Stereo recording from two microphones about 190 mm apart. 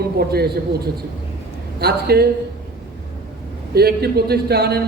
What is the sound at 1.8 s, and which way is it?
Speech, 55° right (ahead or behind).